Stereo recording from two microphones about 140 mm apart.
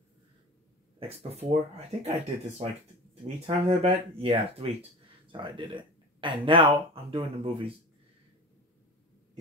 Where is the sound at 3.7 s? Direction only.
45° right (ahead or behind).